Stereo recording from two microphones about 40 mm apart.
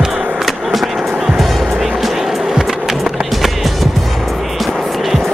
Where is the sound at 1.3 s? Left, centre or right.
Centre.